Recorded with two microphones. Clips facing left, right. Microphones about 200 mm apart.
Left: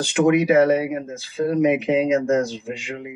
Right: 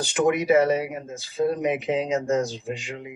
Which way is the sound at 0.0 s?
55° left (ahead or behind).